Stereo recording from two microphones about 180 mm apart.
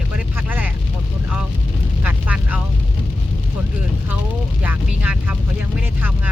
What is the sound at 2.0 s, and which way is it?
Vehicle, 10° right (ahead or behind).